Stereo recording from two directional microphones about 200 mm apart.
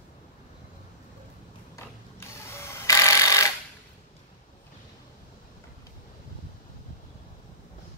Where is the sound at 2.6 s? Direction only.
15° left (ahead or behind).